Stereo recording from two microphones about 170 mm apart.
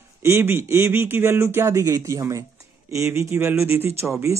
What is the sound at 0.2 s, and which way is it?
Speech, 15° right (ahead or behind).